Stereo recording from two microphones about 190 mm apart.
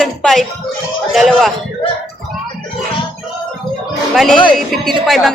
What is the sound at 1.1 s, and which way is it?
Speech, centre (ahead or behind).